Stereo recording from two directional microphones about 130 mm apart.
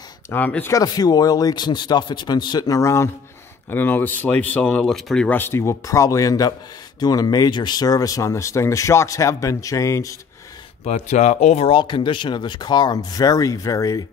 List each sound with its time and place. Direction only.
0.3 s speech: 15° left (ahead or behind)
0.7 s a man's voice: 30° left (ahead or behind)
10.8 s speech: 60° left (ahead or behind)
11.7 s a man's voice: 40° left (ahead or behind)